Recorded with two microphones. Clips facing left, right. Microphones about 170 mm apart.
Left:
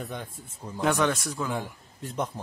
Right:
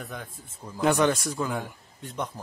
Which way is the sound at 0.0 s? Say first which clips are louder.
Left 2 dB; centre (ahead or behind).